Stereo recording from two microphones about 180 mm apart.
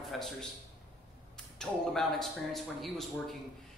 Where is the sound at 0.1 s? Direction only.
Centre (ahead or behind).